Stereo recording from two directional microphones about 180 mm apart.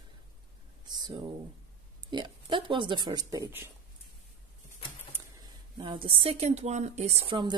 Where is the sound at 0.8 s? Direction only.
25° right (ahead or behind).